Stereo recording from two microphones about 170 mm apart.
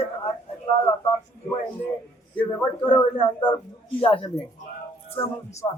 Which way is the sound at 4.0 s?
30° left (ahead or behind).